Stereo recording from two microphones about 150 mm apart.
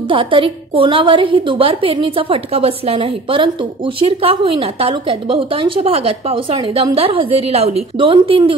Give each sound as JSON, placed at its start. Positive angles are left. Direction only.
{"t": 0.1, "sound": "a woman's voice", "side_deg": -35}